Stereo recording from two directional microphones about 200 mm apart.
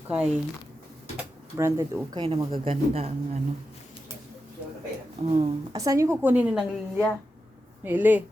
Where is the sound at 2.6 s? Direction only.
30° right (ahead or behind).